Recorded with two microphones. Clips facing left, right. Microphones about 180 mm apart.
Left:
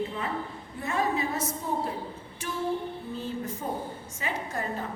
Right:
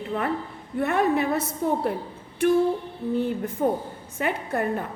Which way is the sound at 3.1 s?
60° right (ahead or behind).